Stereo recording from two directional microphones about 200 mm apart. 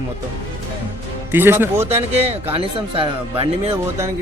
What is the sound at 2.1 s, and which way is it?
Speech, 30° right (ahead or behind).